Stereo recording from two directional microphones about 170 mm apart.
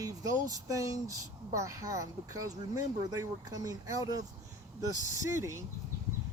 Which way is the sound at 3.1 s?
20° right (ahead or behind).